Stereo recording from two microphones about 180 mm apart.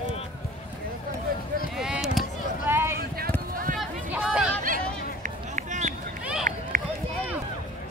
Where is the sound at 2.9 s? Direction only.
55° right (ahead or behind).